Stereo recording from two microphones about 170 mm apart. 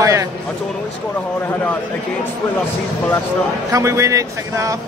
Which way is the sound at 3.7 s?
15° right (ahead or behind).